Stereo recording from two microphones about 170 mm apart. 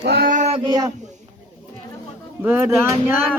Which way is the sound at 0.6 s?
25° right (ahead or behind).